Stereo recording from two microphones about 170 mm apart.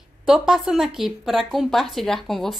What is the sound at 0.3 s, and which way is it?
A woman's voice, 5° right (ahead or behind).